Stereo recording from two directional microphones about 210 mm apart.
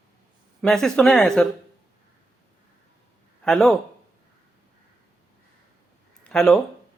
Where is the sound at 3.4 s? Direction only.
Centre (ahead or behind).